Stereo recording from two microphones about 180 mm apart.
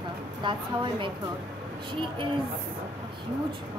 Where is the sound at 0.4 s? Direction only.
25° right (ahead or behind).